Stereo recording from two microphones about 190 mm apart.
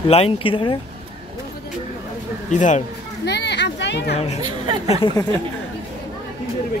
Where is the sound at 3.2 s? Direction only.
60° left (ahead or behind).